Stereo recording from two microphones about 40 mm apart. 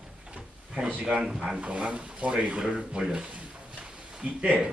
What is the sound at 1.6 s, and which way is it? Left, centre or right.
Speech, right.